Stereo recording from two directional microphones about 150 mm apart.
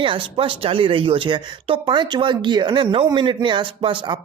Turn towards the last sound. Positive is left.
turn(degrees=-30)  # may be behind; listen again after turning